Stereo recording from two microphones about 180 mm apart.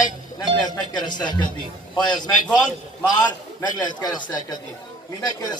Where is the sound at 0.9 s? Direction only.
25° left (ahead or behind).